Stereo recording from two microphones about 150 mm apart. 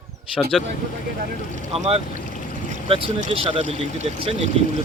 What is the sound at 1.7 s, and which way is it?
Speech, 40° right (ahead or behind).